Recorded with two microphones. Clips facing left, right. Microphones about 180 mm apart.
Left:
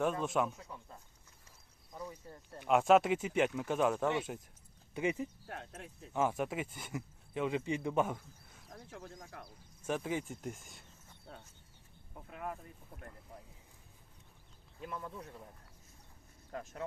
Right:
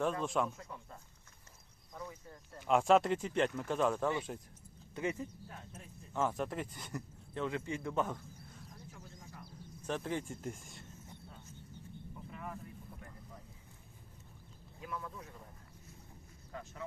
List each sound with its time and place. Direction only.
0.0 s speech: 5° left (ahead or behind)
2.6 s speech: centre (ahead or behind)
4.9 s speech: 15° left (ahead or behind)
5.5 s speech: 75° left (ahead or behind)
6.1 s speech: 10° left (ahead or behind)
8.7 s a sound: 60° left (ahead or behind)
9.8 s speech: 5° left (ahead or behind)
12.3 s a sound: 65° left (ahead or behind)
14.9 s speech: 30° left (ahead or behind)